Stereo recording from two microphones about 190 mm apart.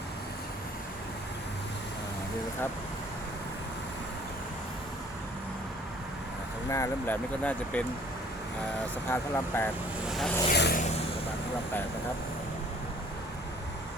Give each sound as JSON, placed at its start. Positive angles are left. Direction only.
{"t": 6.7, "sound": "speech", "side_deg": 15}
{"t": 9.0, "sound": "speech", "side_deg": 10}
{"t": 10.1, "sound": "vehicle", "side_deg": 0}
{"t": 10.5, "sound": "vehicle", "side_deg": 55}